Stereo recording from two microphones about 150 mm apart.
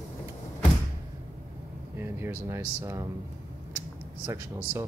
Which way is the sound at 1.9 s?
15° right (ahead or behind).